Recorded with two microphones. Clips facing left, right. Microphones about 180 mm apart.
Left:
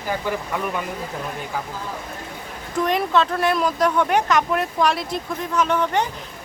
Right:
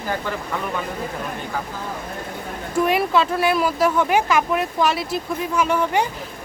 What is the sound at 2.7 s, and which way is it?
Speech, 10° right (ahead or behind).